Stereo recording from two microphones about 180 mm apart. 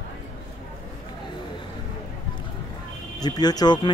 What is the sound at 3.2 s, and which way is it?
Speech, 20° left (ahead or behind).